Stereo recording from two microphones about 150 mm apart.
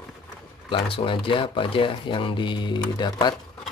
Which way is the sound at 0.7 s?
35° left (ahead or behind).